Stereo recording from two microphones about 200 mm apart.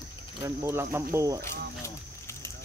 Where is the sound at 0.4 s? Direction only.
15° right (ahead or behind).